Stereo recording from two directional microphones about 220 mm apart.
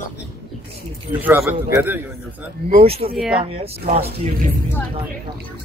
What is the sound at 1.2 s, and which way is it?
Speech, 10° right (ahead or behind).